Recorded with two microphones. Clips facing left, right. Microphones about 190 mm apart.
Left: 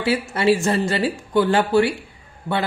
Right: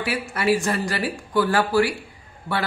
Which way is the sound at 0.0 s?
25° left (ahead or behind).